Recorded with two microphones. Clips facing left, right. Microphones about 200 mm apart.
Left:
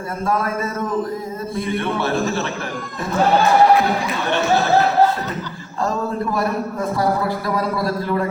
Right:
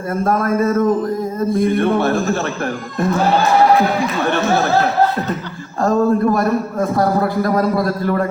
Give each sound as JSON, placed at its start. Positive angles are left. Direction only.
{"t": 0.3, "sound": "speech", "side_deg": -45}
{"t": 5.8, "sound": "speech", "side_deg": -50}